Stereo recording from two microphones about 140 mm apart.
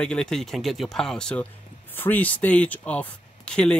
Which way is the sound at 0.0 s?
5° left (ahead or behind).